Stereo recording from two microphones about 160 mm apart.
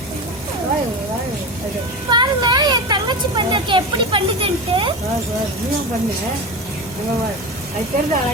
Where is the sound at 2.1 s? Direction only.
25° right (ahead or behind).